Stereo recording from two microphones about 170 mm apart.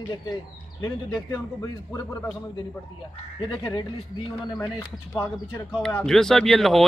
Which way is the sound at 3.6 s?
25° left (ahead or behind).